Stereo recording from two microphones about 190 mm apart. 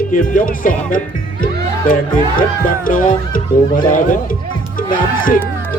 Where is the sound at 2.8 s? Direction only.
45° left (ahead or behind).